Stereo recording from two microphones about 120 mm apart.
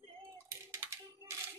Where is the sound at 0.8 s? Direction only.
20° right (ahead or behind).